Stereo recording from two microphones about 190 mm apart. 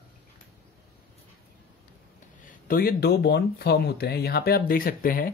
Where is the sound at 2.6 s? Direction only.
50° left (ahead or behind).